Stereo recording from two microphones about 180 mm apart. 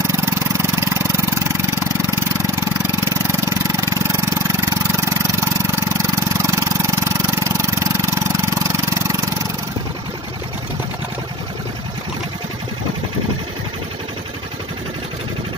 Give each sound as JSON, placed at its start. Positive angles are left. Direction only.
{"t": 0.0, "sound": "vehicle", "side_deg": -15}